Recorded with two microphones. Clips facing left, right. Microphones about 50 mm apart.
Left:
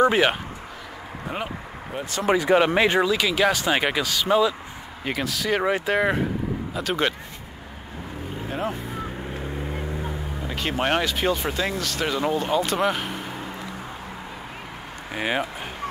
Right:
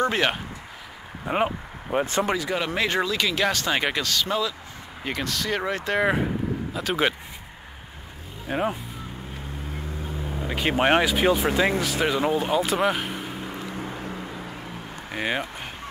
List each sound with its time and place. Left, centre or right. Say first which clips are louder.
0.0 s speech: left 4 dB; centre
1.3 s speech: right 8 dB; right
2.3 s speech: left 7 dB; left
2.9 s speech: left 3 dB; centre
5.0 s speech: left 2 dB; centre
5.9 s speech: even; centre
8.5 s speech: right 3 dB; centre
10.4 s speech: right 3 dB; centre
15.1 s speech: left 2 dB; centre